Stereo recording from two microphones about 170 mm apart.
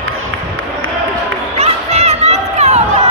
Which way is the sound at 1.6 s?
40° right (ahead or behind).